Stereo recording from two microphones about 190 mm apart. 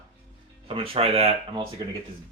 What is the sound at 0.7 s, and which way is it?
Speech, 30° right (ahead or behind).